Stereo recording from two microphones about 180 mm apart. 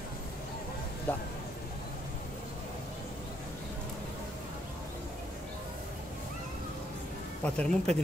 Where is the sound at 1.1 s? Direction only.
10° left (ahead or behind).